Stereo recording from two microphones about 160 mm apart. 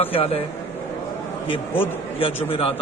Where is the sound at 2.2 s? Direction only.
35° left (ahead or behind).